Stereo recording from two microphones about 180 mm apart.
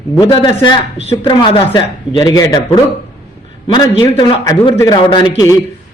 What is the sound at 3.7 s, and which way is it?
Speech, 25° left (ahead or behind).